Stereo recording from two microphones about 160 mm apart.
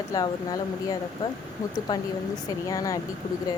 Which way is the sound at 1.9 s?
25° left (ahead or behind).